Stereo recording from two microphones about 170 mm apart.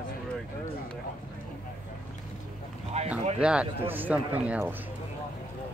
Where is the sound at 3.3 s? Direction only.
5° right (ahead or behind).